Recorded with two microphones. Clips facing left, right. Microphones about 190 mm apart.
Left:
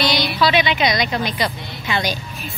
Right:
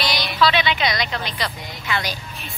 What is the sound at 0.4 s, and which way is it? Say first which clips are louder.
A woman's voice: left 1 dB; 15° left (ahead or behind).